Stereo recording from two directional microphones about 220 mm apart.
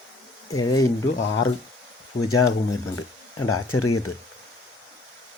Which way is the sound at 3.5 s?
80° left.